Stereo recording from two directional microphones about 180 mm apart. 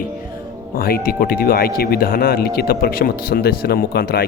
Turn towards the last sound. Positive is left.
turn(degrees=60)  # may be behind; listen again after turning